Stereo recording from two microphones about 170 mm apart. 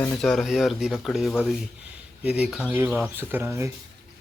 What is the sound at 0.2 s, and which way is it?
Speech, centre (ahead or behind).